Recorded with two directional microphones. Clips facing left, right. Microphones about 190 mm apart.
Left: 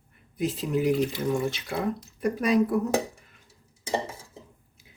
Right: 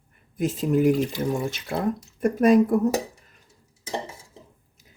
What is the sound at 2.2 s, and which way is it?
Speech, 50° right (ahead or behind).